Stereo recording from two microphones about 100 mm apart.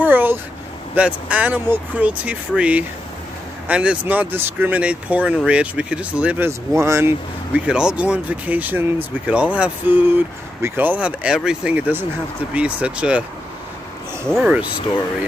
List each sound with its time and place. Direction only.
0.0 s vehicle: 20° right (ahead or behind)
0.9 s speech: 15° right (ahead or behind)
6.7 s speech: 30° right (ahead or behind)
7.5 s speech: 10° right (ahead or behind)
11.7 s speech: 20° right (ahead or behind)